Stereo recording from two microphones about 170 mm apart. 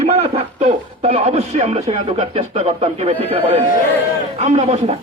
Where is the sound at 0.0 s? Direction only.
40° right (ahead or behind).